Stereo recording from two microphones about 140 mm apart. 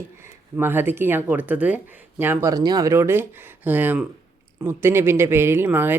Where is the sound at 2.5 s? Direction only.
30° right (ahead or behind).